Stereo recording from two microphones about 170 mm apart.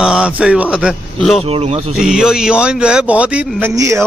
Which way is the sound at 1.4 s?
35° right (ahead or behind).